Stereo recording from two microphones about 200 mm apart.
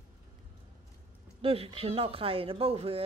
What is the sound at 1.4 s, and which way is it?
Speech, 25° right (ahead or behind).